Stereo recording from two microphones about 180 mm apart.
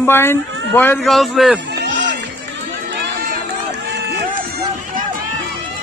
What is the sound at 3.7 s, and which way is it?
Run, 70° right (ahead or behind).